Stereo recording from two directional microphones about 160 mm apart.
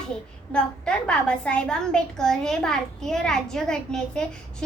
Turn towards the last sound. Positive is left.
turn(degrees=5)  # may be behind; listen again after turning